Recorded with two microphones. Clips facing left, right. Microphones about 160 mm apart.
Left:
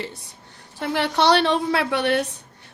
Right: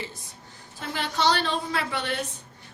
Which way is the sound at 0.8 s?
65° left (ahead or behind).